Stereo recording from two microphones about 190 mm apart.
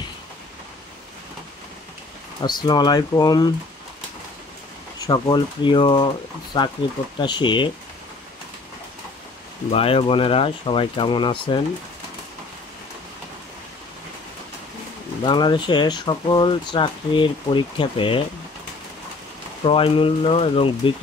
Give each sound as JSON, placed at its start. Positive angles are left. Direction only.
{"t": 2.4, "sound": "speech", "side_deg": 20}
{"t": 5.0, "sound": "speech", "side_deg": 20}
{"t": 9.7, "sound": "speech", "side_deg": 30}
{"t": 15.2, "sound": "speech", "side_deg": 25}
{"t": 19.6, "sound": "speech", "side_deg": 30}